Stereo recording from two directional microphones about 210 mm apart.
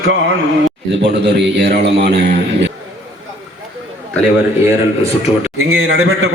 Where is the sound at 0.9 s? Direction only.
55° right (ahead or behind).